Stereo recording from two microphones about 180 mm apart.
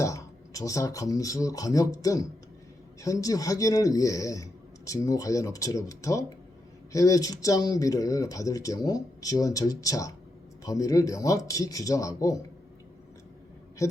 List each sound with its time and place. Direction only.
0.0 s speech: 20° left (ahead or behind)